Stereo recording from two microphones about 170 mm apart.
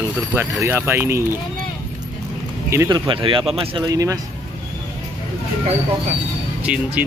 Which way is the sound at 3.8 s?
20° right (ahead or behind).